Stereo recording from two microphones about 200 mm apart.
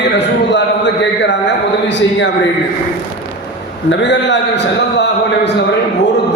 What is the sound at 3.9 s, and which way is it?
A man's voice, 60° left (ahead or behind).